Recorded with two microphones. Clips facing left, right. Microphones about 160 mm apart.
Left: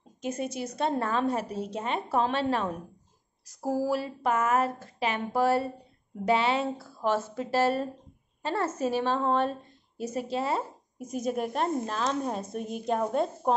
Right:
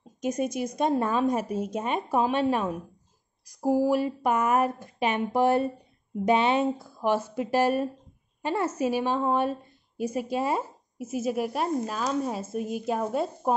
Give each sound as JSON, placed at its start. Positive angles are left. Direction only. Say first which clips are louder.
{"t": 0.2, "sound": "a woman's voice", "louder": "right 4 dB", "side_deg": -15}